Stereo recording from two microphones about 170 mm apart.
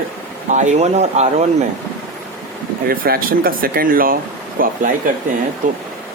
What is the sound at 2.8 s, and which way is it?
Speech, 60° right (ahead or behind).